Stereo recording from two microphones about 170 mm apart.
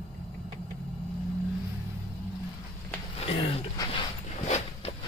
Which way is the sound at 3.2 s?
35° left (ahead or behind).